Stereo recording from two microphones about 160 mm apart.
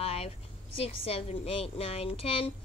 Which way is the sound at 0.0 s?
40° left (ahead or behind).